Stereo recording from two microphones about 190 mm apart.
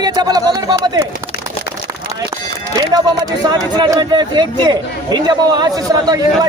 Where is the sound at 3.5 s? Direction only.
20° right (ahead or behind).